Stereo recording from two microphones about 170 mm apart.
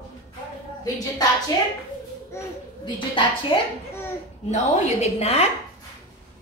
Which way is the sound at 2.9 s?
30° left (ahead or behind).